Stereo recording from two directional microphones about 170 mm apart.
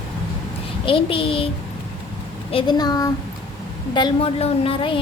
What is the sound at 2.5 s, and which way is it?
A woman's voice, 30° left (ahead or behind).